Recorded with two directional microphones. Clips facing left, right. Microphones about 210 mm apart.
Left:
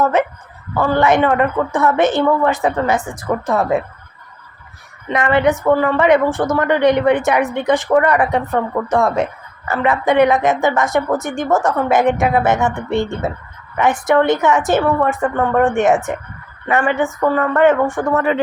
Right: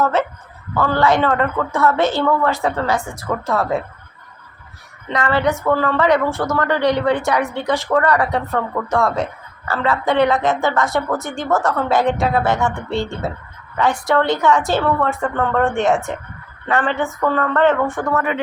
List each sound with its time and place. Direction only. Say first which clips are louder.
0.0 s a woman's voice: left 2 dB; 15° left (ahead or behind)
5.0 s a woman's voice: left 3 dB; 20° left (ahead or behind)
18.2 s speech: left 5 dB; 30° left (ahead or behind)